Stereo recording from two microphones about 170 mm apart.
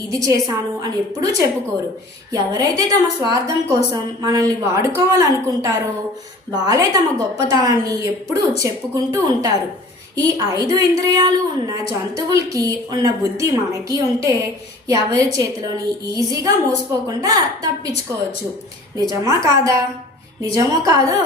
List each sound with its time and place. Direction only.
0.1 s a woman's voice: 20° right (ahead or behind)
18.9 s a woman's voice: 20° right (ahead or behind)